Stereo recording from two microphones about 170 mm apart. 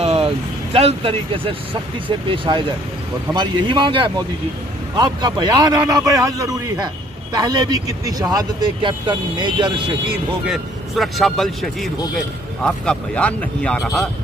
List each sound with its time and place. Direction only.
0.0 s vehicle: 35° right (ahead or behind)
0.7 s speech: 35° right (ahead or behind)
10.4 s speech: centre (ahead or behind)